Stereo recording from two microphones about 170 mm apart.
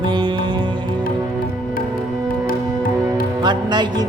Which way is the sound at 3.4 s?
25° right (ahead or behind).